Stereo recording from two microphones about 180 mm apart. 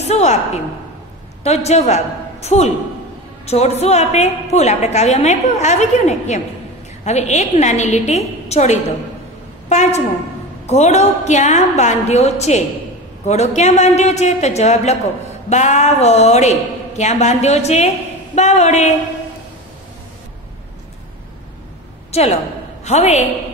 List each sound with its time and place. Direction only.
0.0 s a woman's voice: 40° left (ahead or behind)
1.4 s a woman's voice: 35° left (ahead or behind)
22.1 s a woman's voice: 35° left (ahead or behind)